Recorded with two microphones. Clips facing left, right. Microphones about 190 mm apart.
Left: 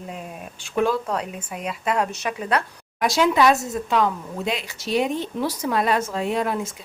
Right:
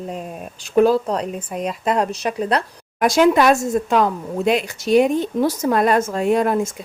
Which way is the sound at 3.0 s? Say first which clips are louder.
Right 4 dB; 50° right (ahead or behind).